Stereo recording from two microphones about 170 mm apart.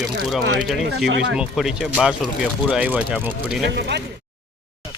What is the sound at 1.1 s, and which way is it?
Speech, 90° right.